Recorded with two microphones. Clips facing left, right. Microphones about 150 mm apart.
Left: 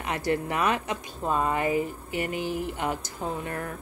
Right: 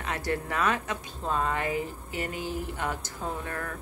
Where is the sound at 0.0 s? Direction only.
15° left (ahead or behind).